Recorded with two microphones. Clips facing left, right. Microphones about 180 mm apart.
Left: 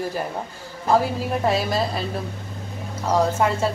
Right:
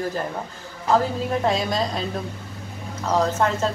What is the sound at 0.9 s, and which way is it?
A woman's voice, 10° left (ahead or behind).